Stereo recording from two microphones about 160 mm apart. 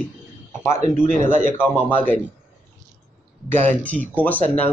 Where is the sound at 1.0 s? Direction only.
55° right (ahead or behind).